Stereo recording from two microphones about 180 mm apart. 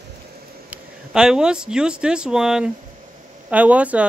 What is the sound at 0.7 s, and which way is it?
Speech, 5° right (ahead or behind).